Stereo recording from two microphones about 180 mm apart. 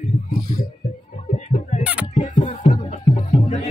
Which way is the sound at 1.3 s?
40° left (ahead or behind).